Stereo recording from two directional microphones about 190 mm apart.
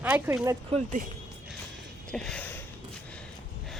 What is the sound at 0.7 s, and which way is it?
Speech, 40° right (ahead or behind).